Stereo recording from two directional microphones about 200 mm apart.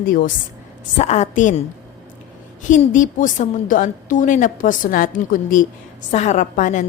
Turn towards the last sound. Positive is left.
turn(degrees=40)  # may be behind; listen again after turning